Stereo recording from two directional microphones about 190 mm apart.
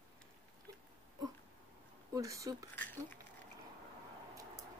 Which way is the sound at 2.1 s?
15° right (ahead or behind).